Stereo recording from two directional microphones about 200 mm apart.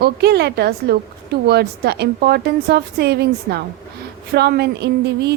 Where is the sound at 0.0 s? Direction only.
55° right (ahead or behind).